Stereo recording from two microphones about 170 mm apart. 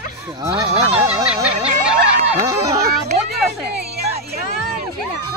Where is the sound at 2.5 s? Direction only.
20° right (ahead or behind).